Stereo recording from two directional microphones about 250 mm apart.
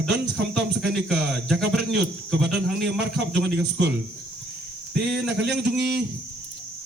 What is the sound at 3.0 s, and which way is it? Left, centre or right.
Speech, right.